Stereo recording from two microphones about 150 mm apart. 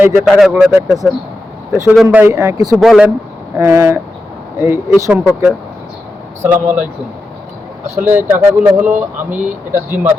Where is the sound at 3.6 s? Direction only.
20° right (ahead or behind).